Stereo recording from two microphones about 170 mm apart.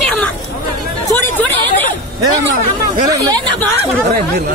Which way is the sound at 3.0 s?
20° right (ahead or behind).